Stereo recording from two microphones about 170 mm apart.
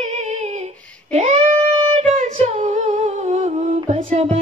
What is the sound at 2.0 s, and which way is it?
Humming, 35° right (ahead or behind).